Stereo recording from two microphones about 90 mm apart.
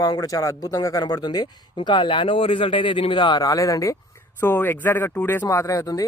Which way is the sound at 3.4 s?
40° left (ahead or behind).